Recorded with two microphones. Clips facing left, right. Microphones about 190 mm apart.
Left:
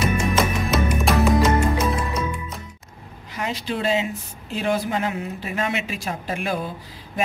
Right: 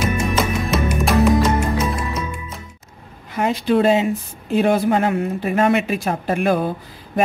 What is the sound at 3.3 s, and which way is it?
A woman's voice, 55° right (ahead or behind).